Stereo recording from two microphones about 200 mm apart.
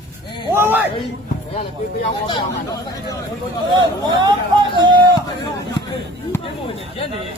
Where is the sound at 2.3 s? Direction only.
20° left (ahead or behind).